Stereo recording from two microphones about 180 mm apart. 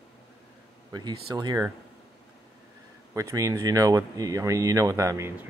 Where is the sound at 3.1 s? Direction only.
15° right (ahead or behind).